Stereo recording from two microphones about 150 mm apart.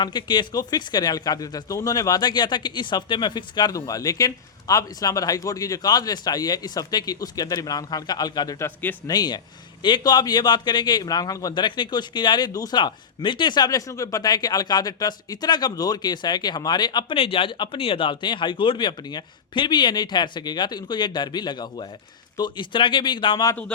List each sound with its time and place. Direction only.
0.0 s a man's voice: 30° left (ahead or behind); by 9.0 s 15° left (ahead or behind)
9.0 s a man's voice: 25° left (ahead or behind)